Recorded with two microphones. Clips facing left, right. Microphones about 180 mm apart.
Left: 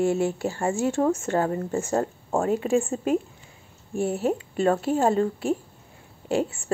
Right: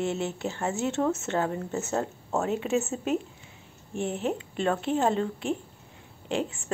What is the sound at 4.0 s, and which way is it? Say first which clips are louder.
Speech: left 5 dB; 10° left (ahead or behind).